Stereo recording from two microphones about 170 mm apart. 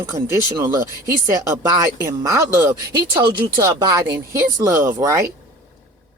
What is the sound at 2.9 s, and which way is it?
Speech, 25° right (ahead or behind).